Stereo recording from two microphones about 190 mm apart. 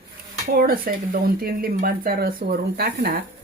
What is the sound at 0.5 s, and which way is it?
Speech, 50° right (ahead or behind).